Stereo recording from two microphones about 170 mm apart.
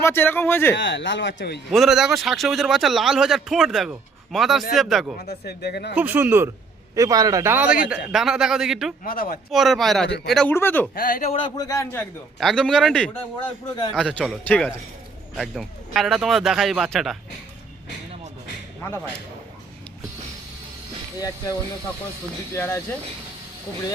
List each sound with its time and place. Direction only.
0.0 s a man's voice: 15° left (ahead or behind)
0.8 s speech: 90° left
1.7 s speech: centre (ahead or behind)
5.3 s speech: 70° left (ahead or behind)
5.9 s a man's voice: 10° right (ahead or behind)
9.0 s speech: 60° left (ahead or behind)
9.5 s a man's voice: centre (ahead or behind)
10.9 s speech: 55° left (ahead or behind)
11.3 s a man's voice: 30° left (ahead or behind)
12.4 s speech: 5° left (ahead or behind)
15.4 s speech: centre (ahead or behind)
21.2 s a man's voice: 20° left (ahead or behind)
22.5 s a man's voice: 15° left (ahead or behind)